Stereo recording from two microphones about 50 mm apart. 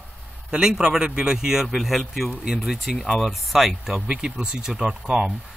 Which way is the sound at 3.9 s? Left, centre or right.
Centre.